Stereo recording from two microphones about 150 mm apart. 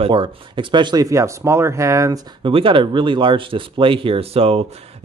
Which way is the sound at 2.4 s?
35° right (ahead or behind).